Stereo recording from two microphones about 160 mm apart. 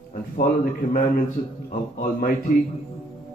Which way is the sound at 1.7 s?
60° left (ahead or behind).